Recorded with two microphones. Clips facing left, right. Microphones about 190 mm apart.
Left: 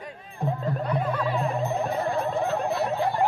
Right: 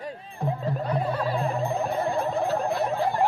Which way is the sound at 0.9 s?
35° right (ahead or behind).